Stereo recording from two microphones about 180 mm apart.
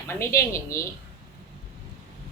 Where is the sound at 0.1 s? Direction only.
15° left (ahead or behind).